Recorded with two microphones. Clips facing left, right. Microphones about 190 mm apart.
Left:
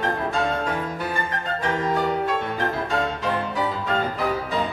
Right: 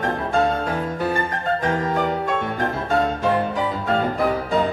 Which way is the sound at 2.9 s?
50° right (ahead or behind).